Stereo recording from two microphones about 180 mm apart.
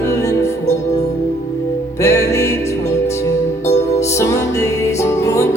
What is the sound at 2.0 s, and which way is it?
Music, 15° left (ahead or behind).